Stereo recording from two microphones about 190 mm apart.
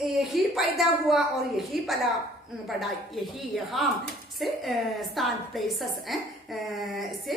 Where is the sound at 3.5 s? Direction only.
Centre (ahead or behind).